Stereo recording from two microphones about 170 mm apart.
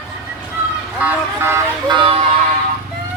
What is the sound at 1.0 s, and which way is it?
Vehicle, 10° right (ahead or behind).